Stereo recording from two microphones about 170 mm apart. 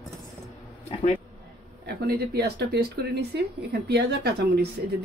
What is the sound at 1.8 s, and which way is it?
A woman's voice, 70° right (ahead or behind).